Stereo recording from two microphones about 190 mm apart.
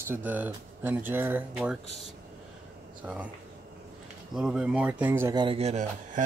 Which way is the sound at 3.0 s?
10° right (ahead or behind).